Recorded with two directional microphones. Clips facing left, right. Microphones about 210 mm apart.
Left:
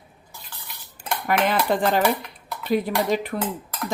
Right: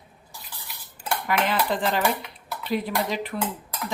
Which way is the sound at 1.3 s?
50° left (ahead or behind).